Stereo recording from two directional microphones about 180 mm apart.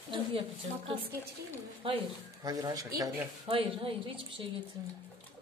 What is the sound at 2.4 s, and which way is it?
Speech, 20° right (ahead or behind).